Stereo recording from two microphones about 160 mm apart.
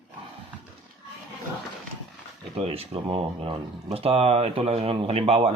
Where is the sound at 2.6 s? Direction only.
40° right (ahead or behind).